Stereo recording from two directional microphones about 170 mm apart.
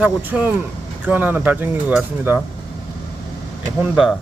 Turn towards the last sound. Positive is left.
turn(degrees=0)  # may be behind; listen again after turning